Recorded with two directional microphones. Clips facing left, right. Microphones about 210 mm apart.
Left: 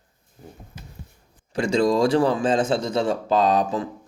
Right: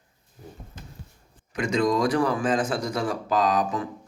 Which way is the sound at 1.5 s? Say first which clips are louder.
Left 3 dB; 30° left (ahead or behind).